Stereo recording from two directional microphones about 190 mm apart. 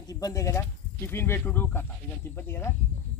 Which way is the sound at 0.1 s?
20° left (ahead or behind).